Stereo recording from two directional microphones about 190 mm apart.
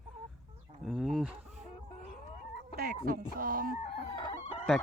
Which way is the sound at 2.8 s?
55° right (ahead or behind).